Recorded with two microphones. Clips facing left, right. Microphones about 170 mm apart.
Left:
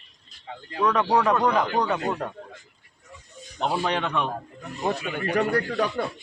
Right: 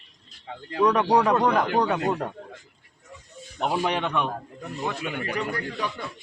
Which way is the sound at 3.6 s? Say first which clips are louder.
Even; 10° right (ahead or behind).